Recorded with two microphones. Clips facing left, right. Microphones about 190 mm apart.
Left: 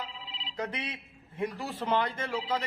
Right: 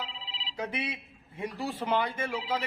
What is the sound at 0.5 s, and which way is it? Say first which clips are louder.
Speech: right 1 dB; 10° right (ahead or behind).